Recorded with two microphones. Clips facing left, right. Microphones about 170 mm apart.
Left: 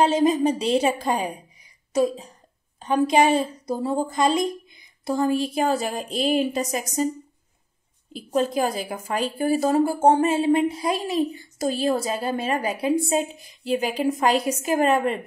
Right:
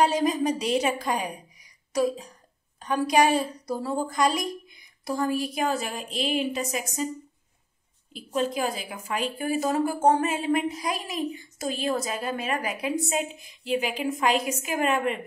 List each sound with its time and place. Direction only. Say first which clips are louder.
0.0 s a woman's voice: left 4 dB; 25° left (ahead or behind)
8.1 s a woman's voice: left 4 dB; 40° left (ahead or behind)